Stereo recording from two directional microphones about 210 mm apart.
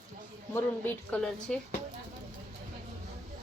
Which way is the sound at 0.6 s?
10° left (ahead or behind).